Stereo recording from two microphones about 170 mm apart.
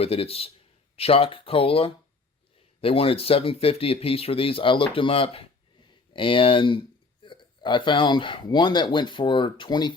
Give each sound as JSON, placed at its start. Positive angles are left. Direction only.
{"t": 0.0, "sound": "speech", "side_deg": 35}